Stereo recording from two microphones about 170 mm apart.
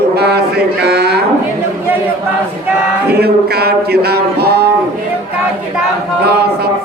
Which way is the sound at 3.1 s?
70° right (ahead or behind).